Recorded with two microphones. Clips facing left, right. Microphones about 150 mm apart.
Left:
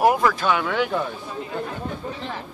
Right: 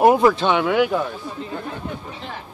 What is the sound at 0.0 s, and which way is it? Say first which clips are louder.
Speech: right 4 dB; 25° right (ahead or behind).